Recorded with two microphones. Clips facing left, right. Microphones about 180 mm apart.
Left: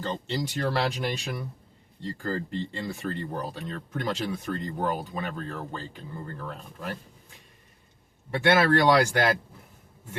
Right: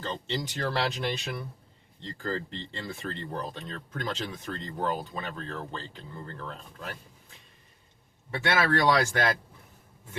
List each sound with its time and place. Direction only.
0.0 s speech: 15° left (ahead or behind)
8.5 s speech: 15° left (ahead or behind)